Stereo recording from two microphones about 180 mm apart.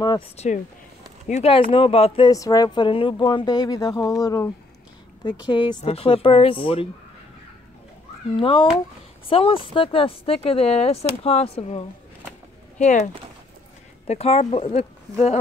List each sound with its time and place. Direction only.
0.4 s speech: 35° left (ahead or behind)
8.4 s speech: 30° left (ahead or behind)